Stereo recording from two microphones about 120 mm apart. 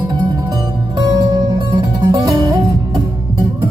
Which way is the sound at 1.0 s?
35° right (ahead or behind).